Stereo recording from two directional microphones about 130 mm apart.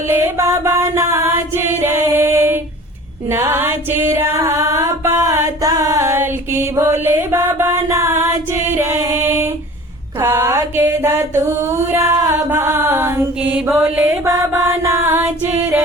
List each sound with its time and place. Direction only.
0.1 s music: 25° right (ahead or behind)